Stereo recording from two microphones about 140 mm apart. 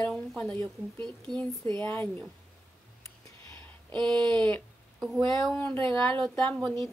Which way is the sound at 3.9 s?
5° left (ahead or behind).